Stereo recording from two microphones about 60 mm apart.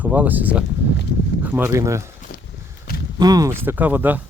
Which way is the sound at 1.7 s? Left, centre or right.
Right.